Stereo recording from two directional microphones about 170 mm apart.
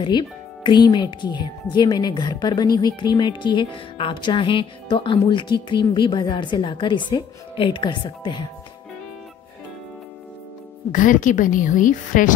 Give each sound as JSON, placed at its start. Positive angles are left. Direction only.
{"t": 0.0, "sound": "speech", "side_deg": 25}
{"t": 10.9, "sound": "a woman's voice", "side_deg": 50}